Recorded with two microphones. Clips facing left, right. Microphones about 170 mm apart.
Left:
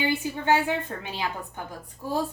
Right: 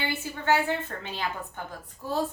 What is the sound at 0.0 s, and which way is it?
A woman's voice, 15° left (ahead or behind).